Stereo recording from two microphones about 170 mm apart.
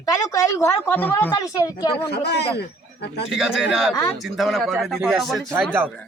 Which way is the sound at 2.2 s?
75° left (ahead or behind).